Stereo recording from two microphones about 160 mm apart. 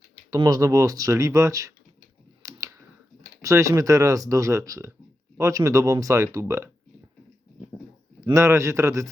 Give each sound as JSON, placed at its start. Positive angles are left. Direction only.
{"t": 0.3, "sound": "speech", "side_deg": -20}
{"t": 2.4, "sound": "a sound", "side_deg": -20}
{"t": 3.4, "sound": "speech", "side_deg": -20}
{"t": 8.2, "sound": "speech", "side_deg": -20}